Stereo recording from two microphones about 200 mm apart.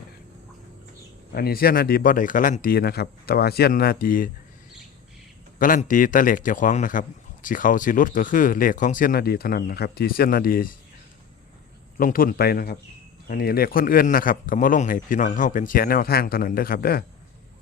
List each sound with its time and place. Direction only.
1.3 s a man's voice: 50° left (ahead or behind)
5.5 s a man's voice: 40° left (ahead or behind)
11.9 s a man's voice: 45° left (ahead or behind)